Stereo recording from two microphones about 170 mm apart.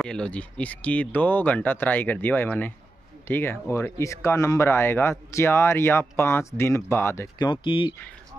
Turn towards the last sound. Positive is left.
turn(degrees=30)  # may be behind; listen again after turning